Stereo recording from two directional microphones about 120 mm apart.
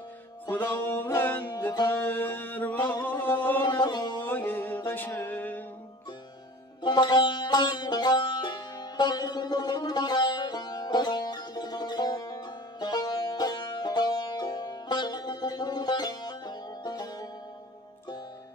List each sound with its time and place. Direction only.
0.5 s music: 15° left (ahead or behind)
1.9 s a sound: 15° left (ahead or behind)
3.8 s music: 40° left (ahead or behind)
4.2 s music: 15° left (ahead or behind)
6.8 s music: 35° left (ahead or behind)